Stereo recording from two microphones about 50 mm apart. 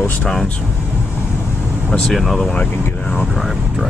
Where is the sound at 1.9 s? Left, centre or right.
Centre.